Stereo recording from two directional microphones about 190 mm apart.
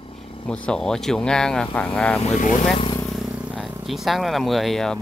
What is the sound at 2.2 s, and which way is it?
Speech, 40° left (ahead or behind).